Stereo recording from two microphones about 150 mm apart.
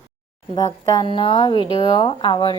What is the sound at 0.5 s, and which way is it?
A woman's voice, 25° left (ahead or behind).